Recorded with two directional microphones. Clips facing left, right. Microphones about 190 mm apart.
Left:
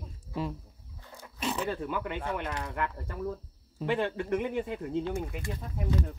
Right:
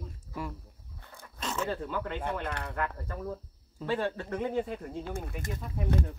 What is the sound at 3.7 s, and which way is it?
Speech, 20° left (ahead or behind).